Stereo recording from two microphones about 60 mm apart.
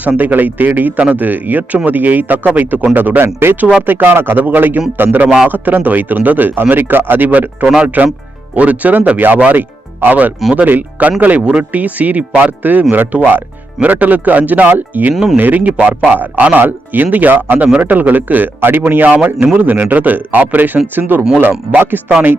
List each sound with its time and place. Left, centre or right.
0.0 s speech: right